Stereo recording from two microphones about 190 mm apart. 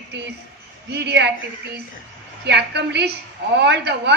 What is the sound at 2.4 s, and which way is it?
A woman's voice, 65° right (ahead or behind).